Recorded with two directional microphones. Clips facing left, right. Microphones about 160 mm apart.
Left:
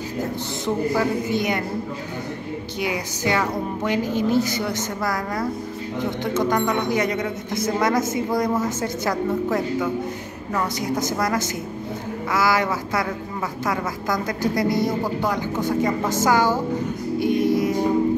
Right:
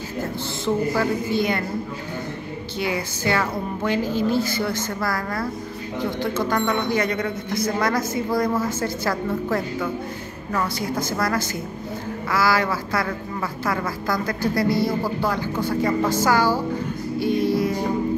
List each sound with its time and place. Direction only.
0.9 s a woman's voice: 15° left (ahead or behind)
2.8 s a woman's voice: 15° left (ahead or behind)
17.2 s music: 20° left (ahead or behind)